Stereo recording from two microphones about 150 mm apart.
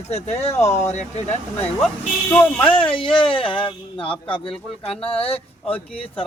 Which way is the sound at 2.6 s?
35° left (ahead or behind).